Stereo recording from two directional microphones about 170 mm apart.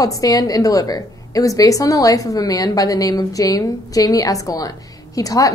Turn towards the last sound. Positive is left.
turn(degrees=20)  # may be behind; listen again after turning